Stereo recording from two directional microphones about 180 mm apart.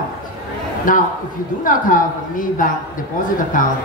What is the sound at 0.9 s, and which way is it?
Speech, 50° left (ahead or behind).